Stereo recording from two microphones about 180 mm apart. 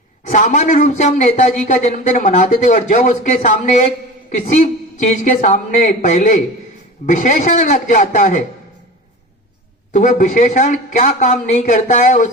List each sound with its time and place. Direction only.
0.3 s a man's voice: 45° left (ahead or behind)
4.4 s speech: 45° left (ahead or behind)
9.9 s speech: 45° left (ahead or behind)